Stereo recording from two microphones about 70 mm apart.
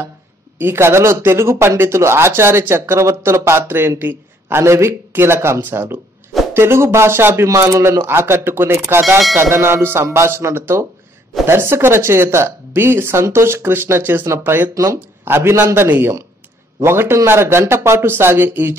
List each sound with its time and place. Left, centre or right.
0.6 s speech: right
14.7 s speech: right
15.0 s speech: right